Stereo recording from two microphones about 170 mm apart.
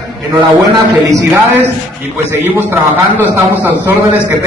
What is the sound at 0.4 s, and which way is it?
A man's voice, 20° right (ahead or behind).